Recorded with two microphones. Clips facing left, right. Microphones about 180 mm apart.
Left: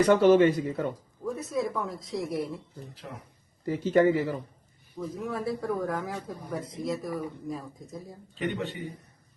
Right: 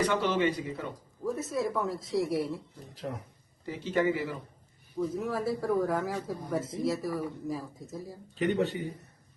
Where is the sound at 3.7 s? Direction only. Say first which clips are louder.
Left 6 dB; 45° left (ahead or behind).